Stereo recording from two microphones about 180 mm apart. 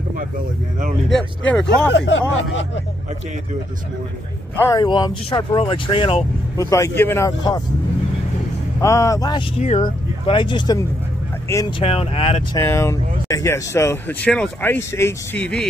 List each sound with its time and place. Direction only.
1.1 s speech: 5° left (ahead or behind)
2.0 s speech: 90° left
4.7 s speech: 25° left (ahead or behind)
6.5 s speech: 15° left (ahead or behind)
8.8 s speech: 15° left (ahead or behind)
9.6 s speech: 35° left (ahead or behind); by 11.6 s 15° left (ahead or behind)
11.8 s speech: 30° left (ahead or behind)
12.5 s speech: 15° left (ahead or behind)